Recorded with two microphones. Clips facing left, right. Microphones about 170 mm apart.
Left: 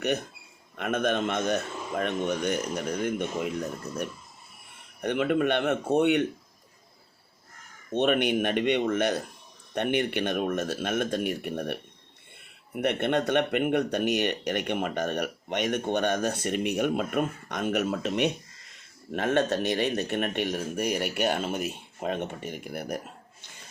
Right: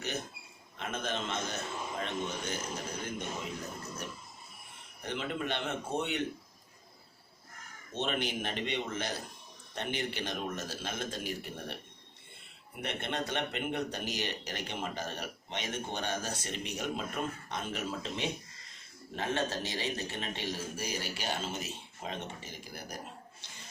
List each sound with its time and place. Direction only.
0.8 s speech: 65° left (ahead or behind)
5.0 s speech: 55° left (ahead or behind)
7.9 s speech: 60° left (ahead or behind)